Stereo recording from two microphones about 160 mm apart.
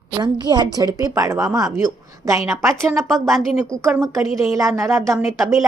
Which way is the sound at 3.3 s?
Centre (ahead or behind).